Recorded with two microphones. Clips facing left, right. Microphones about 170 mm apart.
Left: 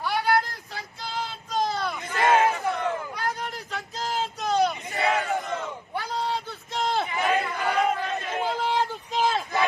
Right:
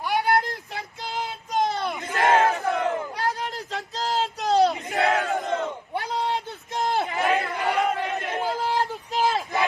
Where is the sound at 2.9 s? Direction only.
35° right (ahead or behind).